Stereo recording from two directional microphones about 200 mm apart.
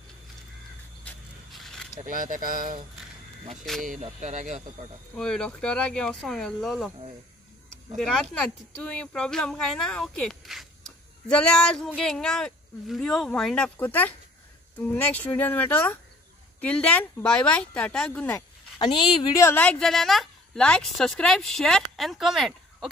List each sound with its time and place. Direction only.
1.0 s vehicle: centre (ahead or behind)
2.0 s speech: 40° right (ahead or behind)
3.8 s speech: 40° right (ahead or behind)
5.1 s a woman's voice: 5° left (ahead or behind)
8.4 s a woman's voice: 5° left (ahead or behind)
18.8 s a woman's voice: 20° left (ahead or behind); by 22.8 s centre (ahead or behind)